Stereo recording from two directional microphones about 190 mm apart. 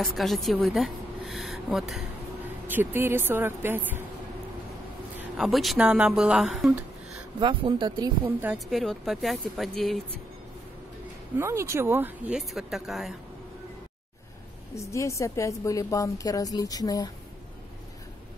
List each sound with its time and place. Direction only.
0.0 s speech: centre (ahead or behind)
5.4 s speech: centre (ahead or behind)
7.3 s speech: 25° right (ahead or behind)
8.4 s speech: 5° right (ahead or behind)
11.3 s speech: 15° right (ahead or behind)
14.8 s a woman's voice: 15° left (ahead or behind)